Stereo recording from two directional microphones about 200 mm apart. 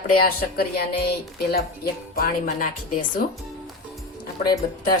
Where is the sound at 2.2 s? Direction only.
45° left (ahead or behind).